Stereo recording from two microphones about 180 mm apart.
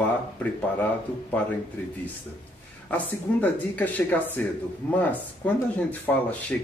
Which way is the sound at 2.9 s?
10° left (ahead or behind).